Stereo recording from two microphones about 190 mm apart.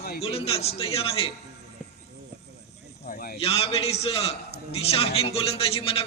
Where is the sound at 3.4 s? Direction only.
30° left (ahead or behind).